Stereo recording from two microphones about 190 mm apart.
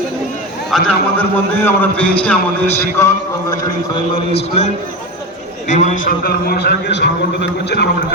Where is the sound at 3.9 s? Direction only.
30° left (ahead or behind).